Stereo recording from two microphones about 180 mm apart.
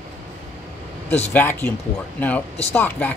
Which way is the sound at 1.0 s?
35° left (ahead or behind).